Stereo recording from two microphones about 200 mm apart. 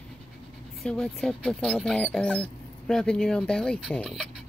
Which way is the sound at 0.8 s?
5° left (ahead or behind).